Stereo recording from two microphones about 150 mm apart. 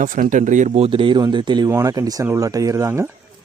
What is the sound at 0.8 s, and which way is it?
Speech, 35° right (ahead or behind).